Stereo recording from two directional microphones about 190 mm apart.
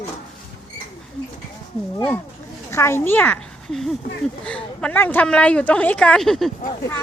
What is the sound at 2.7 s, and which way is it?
A woman's voice, 15° left (ahead or behind).